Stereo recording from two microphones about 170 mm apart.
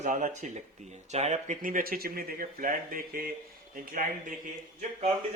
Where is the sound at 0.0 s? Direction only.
45° right (ahead or behind).